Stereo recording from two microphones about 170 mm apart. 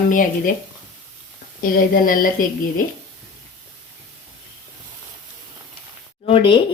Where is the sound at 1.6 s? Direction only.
55° left (ahead or behind).